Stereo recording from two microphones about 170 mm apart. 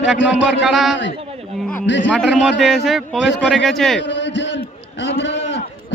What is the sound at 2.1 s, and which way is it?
Speech, 5° right (ahead or behind).